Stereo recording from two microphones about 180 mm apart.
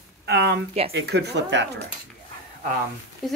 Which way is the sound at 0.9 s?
65° right (ahead or behind).